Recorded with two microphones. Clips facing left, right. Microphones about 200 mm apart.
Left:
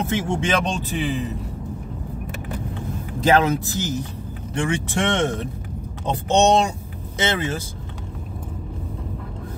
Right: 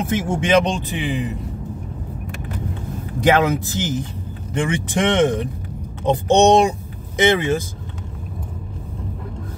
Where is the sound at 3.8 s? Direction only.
90° right.